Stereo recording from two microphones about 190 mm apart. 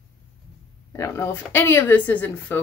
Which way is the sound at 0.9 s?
15° left (ahead or behind).